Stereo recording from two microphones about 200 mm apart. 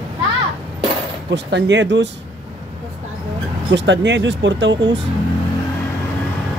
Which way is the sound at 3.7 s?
60° right (ahead or behind).